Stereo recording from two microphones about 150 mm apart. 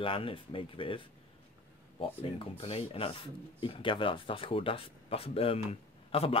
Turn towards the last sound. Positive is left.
turn(degrees=40)  # may be behind; listen again after turning